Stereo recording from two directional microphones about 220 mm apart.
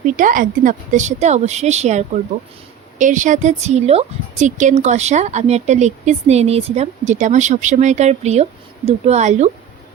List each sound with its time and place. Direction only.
0.2 s a woman's voice: 35° right (ahead or behind)